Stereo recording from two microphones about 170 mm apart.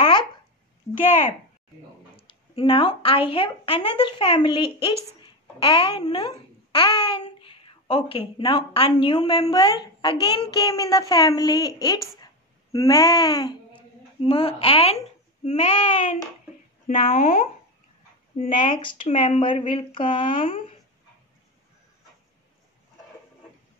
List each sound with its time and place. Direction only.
0.0 s a sound: 30° left (ahead or behind)
2.1 s a child's voice: 30° left (ahead or behind)
14.2 s speech: 35° left (ahead or behind)
17.1 s speech: 55° left (ahead or behind)
18.4 s speech: 30° left (ahead or behind)